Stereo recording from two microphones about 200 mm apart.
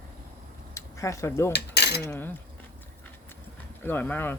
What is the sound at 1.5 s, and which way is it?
Cutlery, 55° left (ahead or behind).